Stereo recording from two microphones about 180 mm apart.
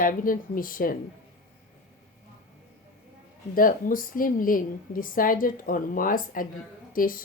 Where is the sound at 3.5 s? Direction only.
50° left (ahead or behind).